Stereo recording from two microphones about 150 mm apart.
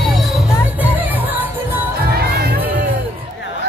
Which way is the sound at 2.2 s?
90° right.